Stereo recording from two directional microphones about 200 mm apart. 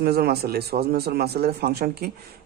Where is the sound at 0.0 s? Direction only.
50° right (ahead or behind).